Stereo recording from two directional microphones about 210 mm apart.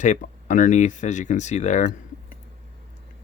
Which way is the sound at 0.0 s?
35° left (ahead or behind).